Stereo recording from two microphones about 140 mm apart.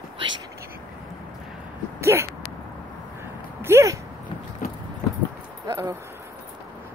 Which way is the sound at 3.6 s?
20° right (ahead or behind).